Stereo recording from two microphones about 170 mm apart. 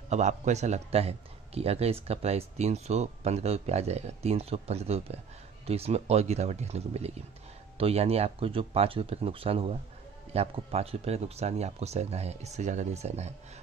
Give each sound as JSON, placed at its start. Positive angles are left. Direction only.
{"t": 0.1, "sound": "a man's voice", "side_deg": -40}